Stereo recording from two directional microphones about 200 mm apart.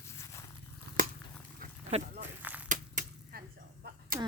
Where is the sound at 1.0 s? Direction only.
40° right (ahead or behind).